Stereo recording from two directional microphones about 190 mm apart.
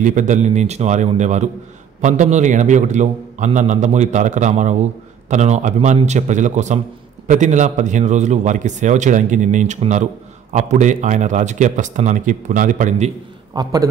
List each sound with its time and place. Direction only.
0.0 s a man's voice: 40° right (ahead or behind)
13.5 s a man's voice: 20° right (ahead or behind)